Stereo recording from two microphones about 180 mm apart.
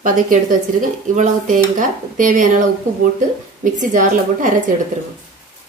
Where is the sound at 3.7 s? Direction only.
45° right (ahead or behind).